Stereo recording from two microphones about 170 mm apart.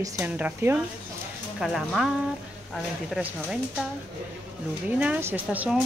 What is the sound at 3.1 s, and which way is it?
Speech, 5° right (ahead or behind).